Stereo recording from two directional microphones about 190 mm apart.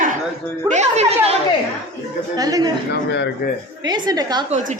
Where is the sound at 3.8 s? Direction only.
20° right (ahead or behind).